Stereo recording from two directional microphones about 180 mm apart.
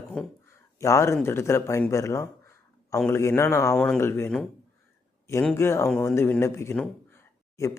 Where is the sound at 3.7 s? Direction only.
5° left (ahead or behind).